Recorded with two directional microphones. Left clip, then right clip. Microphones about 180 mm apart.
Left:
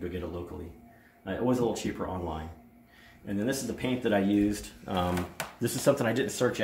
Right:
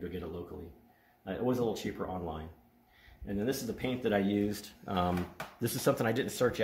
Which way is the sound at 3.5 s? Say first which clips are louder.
Left 3 dB; 35° right (ahead or behind).